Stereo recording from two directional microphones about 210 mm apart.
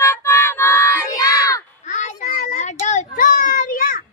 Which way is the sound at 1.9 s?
35° left (ahead or behind).